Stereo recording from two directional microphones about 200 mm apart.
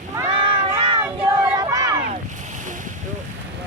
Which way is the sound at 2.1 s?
40° right (ahead or behind).